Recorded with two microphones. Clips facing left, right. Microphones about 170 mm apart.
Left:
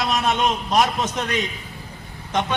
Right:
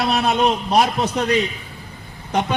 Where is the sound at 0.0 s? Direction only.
35° right (ahead or behind).